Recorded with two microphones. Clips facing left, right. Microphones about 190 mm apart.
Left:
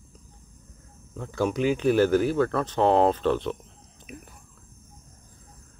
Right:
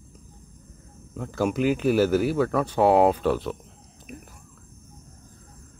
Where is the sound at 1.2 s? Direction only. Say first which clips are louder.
Right 1 dB; 5° right (ahead or behind).